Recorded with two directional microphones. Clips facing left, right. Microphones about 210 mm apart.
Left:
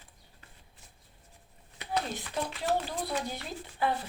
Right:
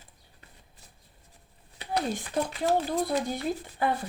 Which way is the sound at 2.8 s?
50° right (ahead or behind).